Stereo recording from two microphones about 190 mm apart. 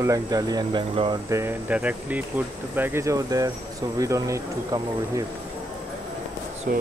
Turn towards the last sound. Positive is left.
turn(degrees=-50)  # may be behind; listen again after turning